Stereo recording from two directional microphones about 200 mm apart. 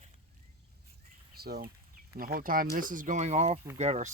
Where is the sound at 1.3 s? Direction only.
50° right (ahead or behind).